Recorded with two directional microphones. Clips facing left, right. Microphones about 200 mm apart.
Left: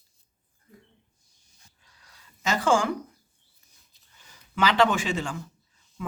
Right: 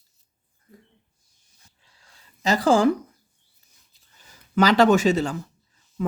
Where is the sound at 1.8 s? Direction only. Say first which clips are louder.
Even; 30° right (ahead or behind).